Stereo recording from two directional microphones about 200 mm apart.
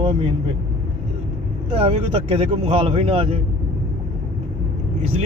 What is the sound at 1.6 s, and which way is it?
Speech, 30° right (ahead or behind).